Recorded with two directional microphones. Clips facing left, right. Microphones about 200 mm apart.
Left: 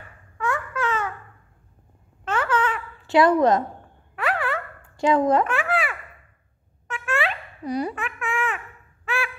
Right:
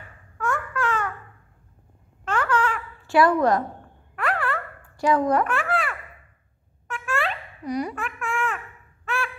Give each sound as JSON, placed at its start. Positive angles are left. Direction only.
{"t": 0.4, "sound": "babbling", "side_deg": 0}
{"t": 2.2, "sound": "a sound", "side_deg": 5}
{"t": 3.1, "sound": "speech", "side_deg": 20}
{"t": 4.1, "sound": "a sound", "side_deg": 5}
{"t": 4.9, "sound": "speech", "side_deg": 25}
{"t": 5.5, "sound": "babbling", "side_deg": 5}
{"t": 6.9, "sound": "a sound", "side_deg": 0}
{"t": 7.6, "sound": "speech", "side_deg": 30}
{"t": 7.9, "sound": "babbling", "side_deg": 5}
{"t": 9.0, "sound": "fowl", "side_deg": 5}